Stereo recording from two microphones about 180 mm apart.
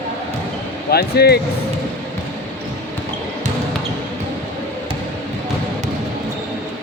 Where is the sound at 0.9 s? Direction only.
60° left (ahead or behind).